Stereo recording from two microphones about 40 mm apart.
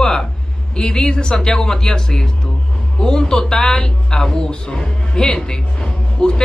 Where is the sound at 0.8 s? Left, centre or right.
Left.